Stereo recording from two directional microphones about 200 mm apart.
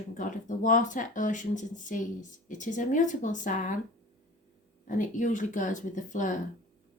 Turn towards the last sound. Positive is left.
turn(degrees=40)  # may be behind; listen again after turning